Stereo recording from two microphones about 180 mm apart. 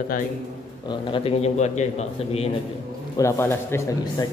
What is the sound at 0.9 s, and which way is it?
A man's voice, 30° left (ahead or behind).